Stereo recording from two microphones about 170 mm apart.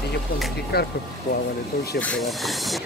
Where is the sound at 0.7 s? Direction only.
70° left (ahead or behind).